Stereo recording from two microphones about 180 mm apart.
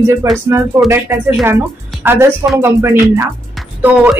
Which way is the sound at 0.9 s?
15° right (ahead or behind).